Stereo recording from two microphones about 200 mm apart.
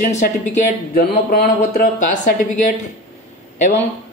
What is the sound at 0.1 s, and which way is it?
Speech, 35° left (ahead or behind).